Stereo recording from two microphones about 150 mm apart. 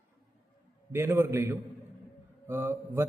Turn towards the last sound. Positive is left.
turn(degrees=-15)  # may be behind; listen again after turning